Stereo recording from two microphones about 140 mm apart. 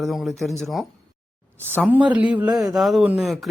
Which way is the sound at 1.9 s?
10° right (ahead or behind).